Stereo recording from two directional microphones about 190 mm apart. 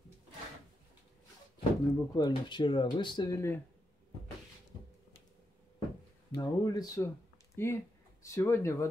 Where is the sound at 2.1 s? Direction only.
25° left (ahead or behind).